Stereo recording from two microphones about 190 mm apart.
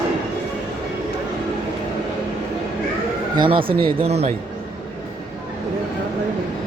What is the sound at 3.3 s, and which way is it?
Speech, 25° right (ahead or behind).